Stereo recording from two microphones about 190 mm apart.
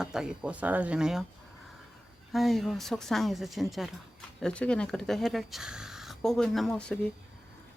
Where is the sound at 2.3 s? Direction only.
Centre (ahead or behind).